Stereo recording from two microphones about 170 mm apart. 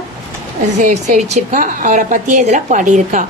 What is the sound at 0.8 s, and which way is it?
A woman's voice, 50° right (ahead or behind).